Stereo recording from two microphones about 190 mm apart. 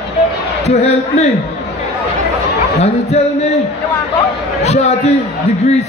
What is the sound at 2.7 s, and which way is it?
Speech, 35° left (ahead or behind).